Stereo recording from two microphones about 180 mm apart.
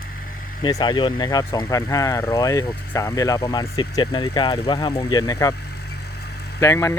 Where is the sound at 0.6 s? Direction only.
25° left (ahead or behind).